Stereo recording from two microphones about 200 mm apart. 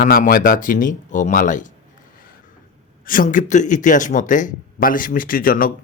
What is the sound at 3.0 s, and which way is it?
Speech, 45° left (ahead or behind).